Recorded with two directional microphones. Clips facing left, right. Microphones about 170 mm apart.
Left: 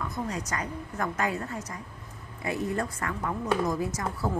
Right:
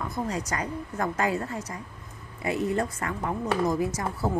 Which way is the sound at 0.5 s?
30° right (ahead or behind).